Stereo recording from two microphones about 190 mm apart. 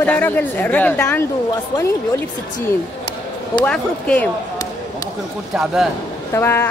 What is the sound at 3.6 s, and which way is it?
Speech, 5° left (ahead or behind).